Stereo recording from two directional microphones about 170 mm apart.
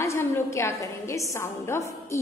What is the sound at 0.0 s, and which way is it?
A woman's voice, 15° left (ahead or behind).